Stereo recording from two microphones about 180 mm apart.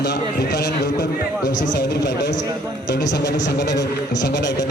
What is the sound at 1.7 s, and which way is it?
Speech, 65° left (ahead or behind).